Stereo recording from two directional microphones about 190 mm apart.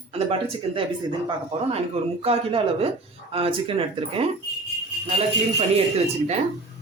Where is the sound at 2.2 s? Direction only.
30° right (ahead or behind).